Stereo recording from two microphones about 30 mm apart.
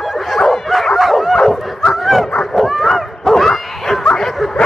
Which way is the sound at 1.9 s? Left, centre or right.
Centre.